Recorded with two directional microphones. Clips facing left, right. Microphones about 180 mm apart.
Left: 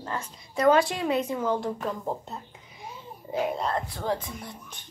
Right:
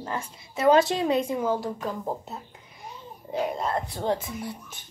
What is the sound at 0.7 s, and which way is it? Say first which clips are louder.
Speech: right 2 dB; 20° right (ahead or behind).